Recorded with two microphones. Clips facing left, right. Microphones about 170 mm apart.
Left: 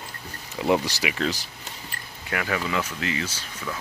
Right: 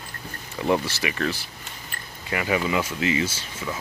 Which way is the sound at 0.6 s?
15° left (ahead or behind).